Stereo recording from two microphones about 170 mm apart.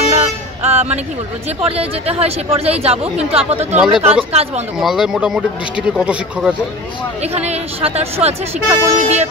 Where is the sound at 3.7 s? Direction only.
Centre (ahead or behind).